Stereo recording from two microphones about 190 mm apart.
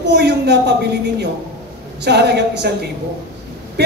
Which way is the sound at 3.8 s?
60° right (ahead or behind).